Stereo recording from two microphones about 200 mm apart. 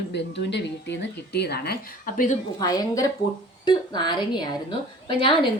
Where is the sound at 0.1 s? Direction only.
60° left (ahead or behind); by 2.4 s 40° left (ahead or behind).